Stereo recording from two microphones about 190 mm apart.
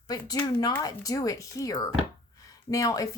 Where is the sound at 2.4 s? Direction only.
20° left (ahead or behind).